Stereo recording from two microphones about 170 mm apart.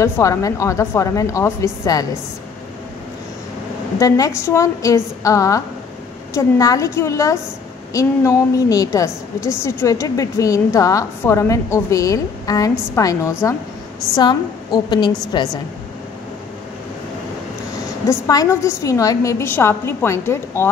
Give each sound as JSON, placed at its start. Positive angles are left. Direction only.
{"t": 0.0, "sound": "a woman's voice", "side_deg": 20}
{"t": 4.0, "sound": "a woman's voice", "side_deg": 20}
{"t": 18.0, "sound": "a woman's voice", "side_deg": 20}